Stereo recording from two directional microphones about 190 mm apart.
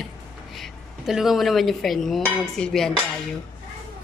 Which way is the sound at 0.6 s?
Centre (ahead or behind).